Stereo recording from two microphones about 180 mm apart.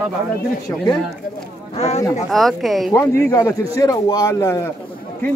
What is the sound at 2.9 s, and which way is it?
A man's voice, 15° left (ahead or behind).